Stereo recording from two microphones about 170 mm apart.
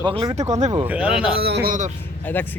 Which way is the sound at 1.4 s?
70° right (ahead or behind).